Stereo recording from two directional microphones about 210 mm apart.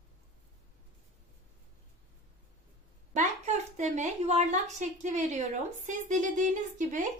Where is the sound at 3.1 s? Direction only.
30° right (ahead or behind).